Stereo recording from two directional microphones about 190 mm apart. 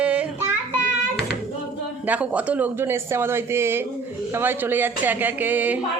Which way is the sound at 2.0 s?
5° right (ahead or behind).